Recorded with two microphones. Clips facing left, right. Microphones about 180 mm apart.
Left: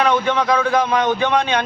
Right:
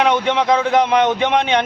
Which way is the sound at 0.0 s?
20° right (ahead or behind).